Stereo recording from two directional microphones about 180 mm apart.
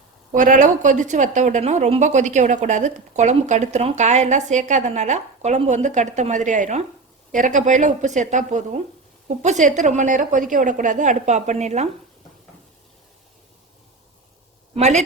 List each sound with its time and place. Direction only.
0.3 s a woman's voice: 45° right (ahead or behind)
14.8 s a woman's voice: 40° right (ahead or behind)